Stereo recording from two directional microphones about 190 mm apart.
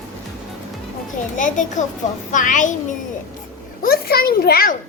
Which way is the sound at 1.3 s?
40° left (ahead or behind).